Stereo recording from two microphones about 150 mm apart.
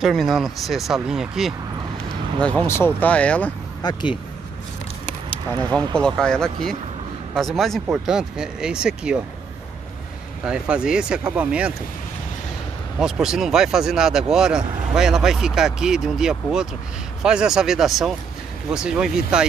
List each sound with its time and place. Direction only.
0.0 s speech: centre (ahead or behind)
2.4 s speech: 15° left (ahead or behind)
3.8 s speech: 30° left (ahead or behind)
5.5 s speech: 10° left (ahead or behind); by 9.2 s 5° right (ahead or behind)
10.4 s speech: 5° right (ahead or behind)
13.0 s speech: 5° right (ahead or behind)